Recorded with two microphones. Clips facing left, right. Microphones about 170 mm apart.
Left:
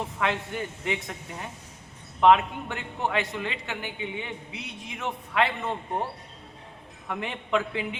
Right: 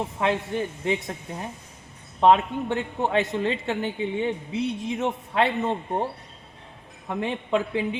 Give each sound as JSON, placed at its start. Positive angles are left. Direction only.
{"t": 0.2, "sound": "a woman's voice", "side_deg": -25}
{"t": 7.1, "sound": "a woman's voice", "side_deg": -25}